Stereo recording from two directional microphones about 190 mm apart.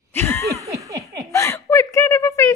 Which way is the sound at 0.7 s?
15° right (ahead or behind).